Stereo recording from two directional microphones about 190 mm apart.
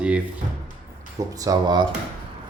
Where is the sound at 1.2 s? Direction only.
20° right (ahead or behind).